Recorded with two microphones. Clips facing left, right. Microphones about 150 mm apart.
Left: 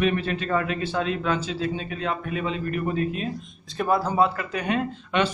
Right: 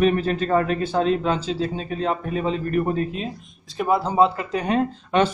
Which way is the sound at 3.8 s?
20° right (ahead or behind).